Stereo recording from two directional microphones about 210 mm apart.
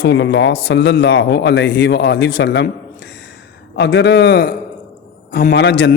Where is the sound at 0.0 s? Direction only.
55° left (ahead or behind).